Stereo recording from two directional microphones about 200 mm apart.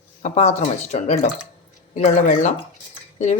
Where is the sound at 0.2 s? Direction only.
35° left (ahead or behind).